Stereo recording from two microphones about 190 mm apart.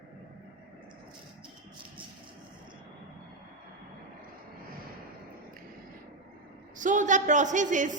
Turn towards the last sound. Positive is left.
turn(degrees=-40)  # may be behind; listen again after turning